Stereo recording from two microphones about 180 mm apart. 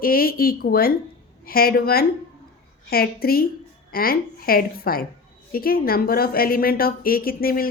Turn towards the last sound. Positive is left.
turn(degrees=55)  # may be behind; listen again after turning